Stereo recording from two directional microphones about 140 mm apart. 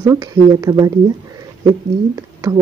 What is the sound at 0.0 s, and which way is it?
Speech, 25° right (ahead or behind).